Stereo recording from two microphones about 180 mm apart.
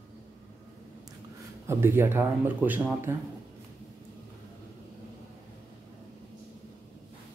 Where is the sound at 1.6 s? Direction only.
15° right (ahead or behind).